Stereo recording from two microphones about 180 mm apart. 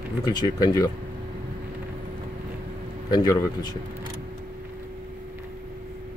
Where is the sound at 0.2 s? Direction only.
20° left (ahead or behind).